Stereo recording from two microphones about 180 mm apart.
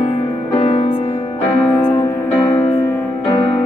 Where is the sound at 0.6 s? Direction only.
35° left (ahead or behind).